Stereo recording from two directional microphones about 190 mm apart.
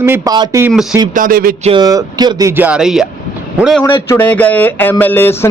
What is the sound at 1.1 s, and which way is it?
Speech, 45° right (ahead or behind).